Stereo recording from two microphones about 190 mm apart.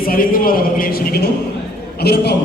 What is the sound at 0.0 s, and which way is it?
A man's voice, 50° left (ahead or behind).